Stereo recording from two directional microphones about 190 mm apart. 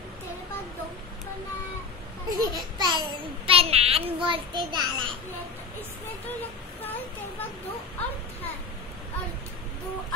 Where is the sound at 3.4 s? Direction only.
30° right (ahead or behind).